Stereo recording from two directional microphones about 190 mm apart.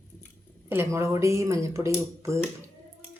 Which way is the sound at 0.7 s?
15° right (ahead or behind).